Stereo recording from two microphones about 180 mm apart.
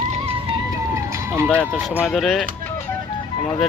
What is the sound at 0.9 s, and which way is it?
Run, 15° right (ahead or behind).